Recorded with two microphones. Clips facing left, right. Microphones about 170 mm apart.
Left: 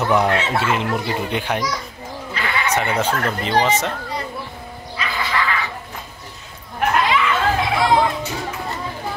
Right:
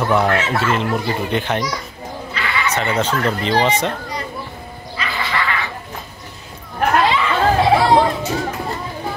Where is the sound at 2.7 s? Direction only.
10° left (ahead or behind).